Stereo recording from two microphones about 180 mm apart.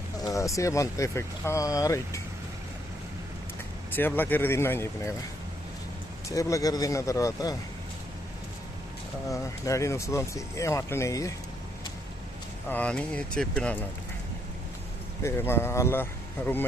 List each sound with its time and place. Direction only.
0.2 s speech: 20° left (ahead or behind)
3.9 s speech: 10° left (ahead or behind)
6.2 s speech: 15° left (ahead or behind)
9.3 s speech: 15° left (ahead or behind)
12.6 s speech: 10° left (ahead or behind)
15.2 s speech: 15° left (ahead or behind)